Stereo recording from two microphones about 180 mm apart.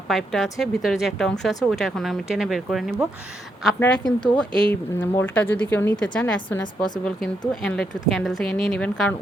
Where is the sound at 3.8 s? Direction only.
20° left (ahead or behind).